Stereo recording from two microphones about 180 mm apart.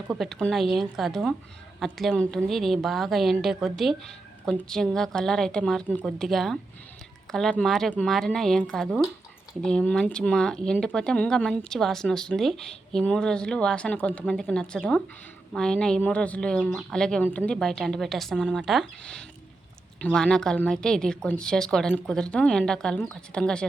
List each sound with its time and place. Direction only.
0.1 s speech: centre (ahead or behind)